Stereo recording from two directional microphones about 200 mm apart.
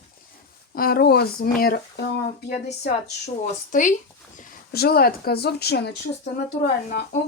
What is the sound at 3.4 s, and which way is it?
Speech, 40° left (ahead or behind).